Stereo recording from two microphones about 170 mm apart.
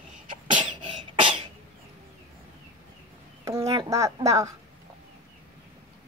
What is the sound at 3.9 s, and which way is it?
Speech, 20° right (ahead or behind).